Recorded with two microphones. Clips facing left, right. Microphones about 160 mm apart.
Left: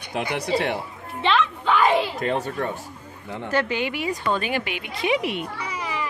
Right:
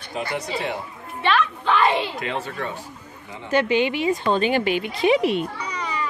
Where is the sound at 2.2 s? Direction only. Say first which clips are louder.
Left 3 dB; 45° left (ahead or behind).